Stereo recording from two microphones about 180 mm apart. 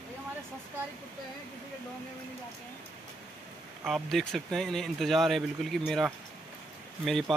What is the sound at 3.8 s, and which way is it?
Speech, centre (ahead or behind).